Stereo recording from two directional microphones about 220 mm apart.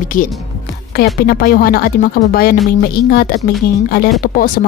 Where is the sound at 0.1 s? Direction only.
35° left (ahead or behind).